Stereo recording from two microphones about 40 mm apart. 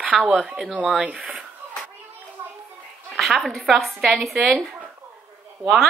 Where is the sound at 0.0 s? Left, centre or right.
Right.